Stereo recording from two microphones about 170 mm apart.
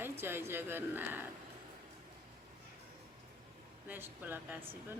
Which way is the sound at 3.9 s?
10° right (ahead or behind).